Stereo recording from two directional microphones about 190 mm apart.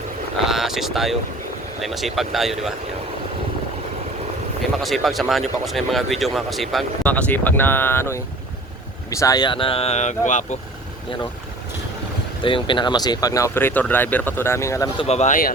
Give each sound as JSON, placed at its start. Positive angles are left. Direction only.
{"t": 0.4, "sound": "a sound", "side_deg": 0}
{"t": 1.8, "sound": "speech", "side_deg": 0}
{"t": 4.8, "sound": "speech", "side_deg": 0}
{"t": 12.4, "sound": "speech", "side_deg": 25}
{"t": 15.0, "sound": "speech", "side_deg": 35}